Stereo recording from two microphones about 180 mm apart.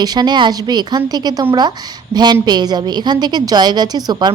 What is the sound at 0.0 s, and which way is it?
A woman's voice, 20° right (ahead or behind).